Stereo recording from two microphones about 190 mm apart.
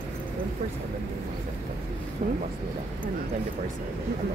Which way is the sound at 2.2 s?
45° right (ahead or behind).